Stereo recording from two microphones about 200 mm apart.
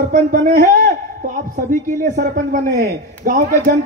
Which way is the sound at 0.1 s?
40° right (ahead or behind).